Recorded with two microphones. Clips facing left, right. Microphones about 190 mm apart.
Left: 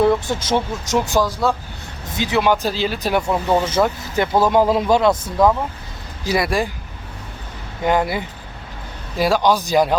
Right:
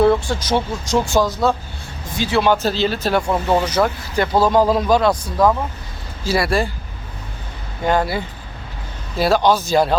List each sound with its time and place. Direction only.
0.0 s speech: 15° left (ahead or behind)
3.3 s speech: 5° right (ahead or behind)
3.6 s speech: 25° left (ahead or behind)
7.9 s speech: 15° left (ahead or behind)